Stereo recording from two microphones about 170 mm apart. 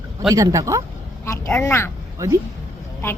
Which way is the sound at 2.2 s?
20° right (ahead or behind).